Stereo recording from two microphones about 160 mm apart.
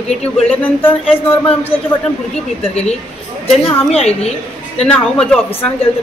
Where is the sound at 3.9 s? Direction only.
40° left (ahead or behind).